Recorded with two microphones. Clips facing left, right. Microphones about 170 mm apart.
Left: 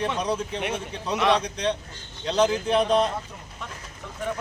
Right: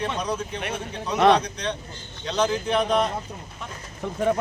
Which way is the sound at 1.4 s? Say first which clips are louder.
Left 3 dB; 30° left (ahead or behind).